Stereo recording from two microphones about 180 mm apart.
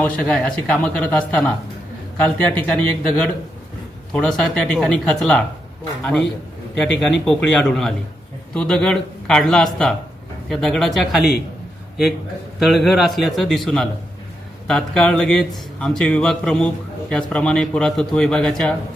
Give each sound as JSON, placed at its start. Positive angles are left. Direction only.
{"t": 0.0, "sound": "a man's voice", "side_deg": 5}
{"t": 6.7, "sound": "a man's voice", "side_deg": 5}
{"t": 12.5, "sound": "a man's voice", "side_deg": 0}